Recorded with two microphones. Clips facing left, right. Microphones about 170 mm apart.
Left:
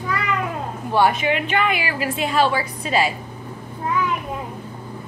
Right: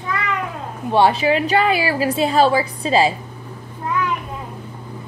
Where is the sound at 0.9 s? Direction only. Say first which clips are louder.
Right 3 dB; 30° right (ahead or behind).